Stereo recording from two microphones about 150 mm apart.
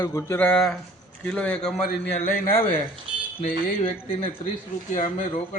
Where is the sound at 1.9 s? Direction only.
75° left (ahead or behind).